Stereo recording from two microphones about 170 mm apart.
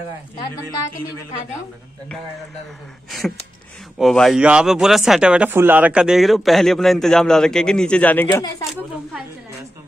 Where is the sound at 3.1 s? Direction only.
Centre (ahead or behind).